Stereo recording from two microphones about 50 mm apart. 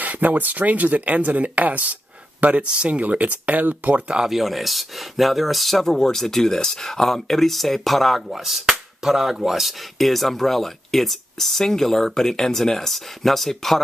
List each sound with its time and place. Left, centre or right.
0.0 s speech: right
4.3 s speech: centre